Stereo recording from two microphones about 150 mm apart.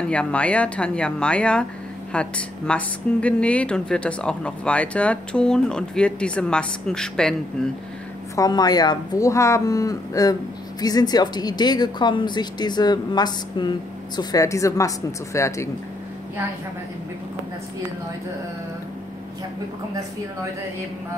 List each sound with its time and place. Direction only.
0.1 s a woman's voice: 10° left (ahead or behind)
8.4 s a woman's voice: 25° left (ahead or behind)